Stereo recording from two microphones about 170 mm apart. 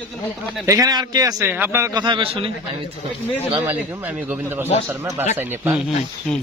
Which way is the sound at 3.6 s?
10° right (ahead or behind).